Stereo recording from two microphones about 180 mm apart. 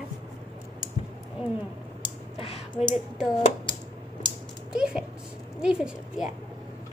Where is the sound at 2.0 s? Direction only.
30° left (ahead or behind).